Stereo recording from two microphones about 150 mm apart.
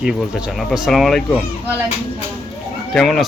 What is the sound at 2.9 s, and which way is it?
Speech, centre (ahead or behind).